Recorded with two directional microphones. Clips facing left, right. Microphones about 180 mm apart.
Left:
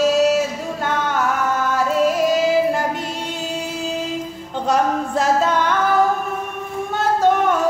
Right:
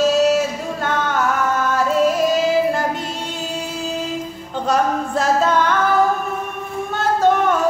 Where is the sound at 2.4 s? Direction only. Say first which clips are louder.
Even; 10° left (ahead or behind).